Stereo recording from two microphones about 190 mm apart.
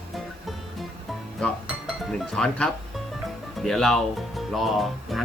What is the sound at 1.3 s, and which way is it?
Speech, centre (ahead or behind).